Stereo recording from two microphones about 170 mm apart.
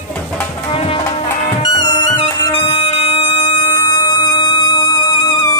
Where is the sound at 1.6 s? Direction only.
25° left (ahead or behind).